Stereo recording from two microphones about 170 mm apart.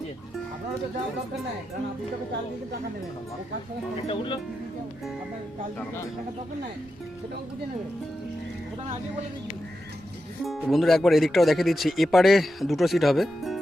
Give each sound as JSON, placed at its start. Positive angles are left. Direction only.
{"t": 4.0, "sound": "speech", "side_deg": 30}
{"t": 10.4, "sound": "speech", "side_deg": 0}